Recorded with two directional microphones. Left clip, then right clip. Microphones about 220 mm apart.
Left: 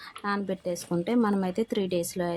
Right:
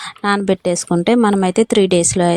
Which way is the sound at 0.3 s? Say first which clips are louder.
Right 14 dB; 35° right (ahead or behind).